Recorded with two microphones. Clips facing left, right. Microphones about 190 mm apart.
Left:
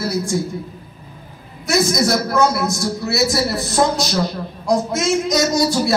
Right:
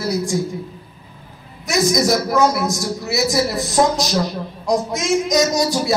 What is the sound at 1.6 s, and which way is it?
A man's voice, 15° right (ahead or behind).